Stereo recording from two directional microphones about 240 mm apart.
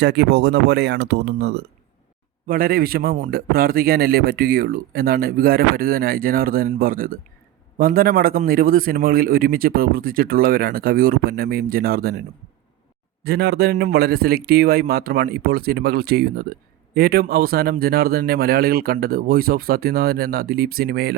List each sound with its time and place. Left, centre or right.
0.0 s speech: right
13.2 s speech: right